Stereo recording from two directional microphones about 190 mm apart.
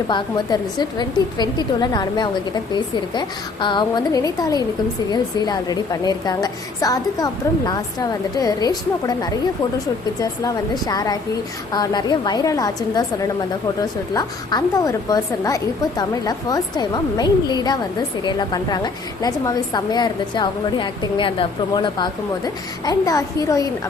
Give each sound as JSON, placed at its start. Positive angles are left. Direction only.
{"t": 0.1, "sound": "a woman's voice", "side_deg": 25}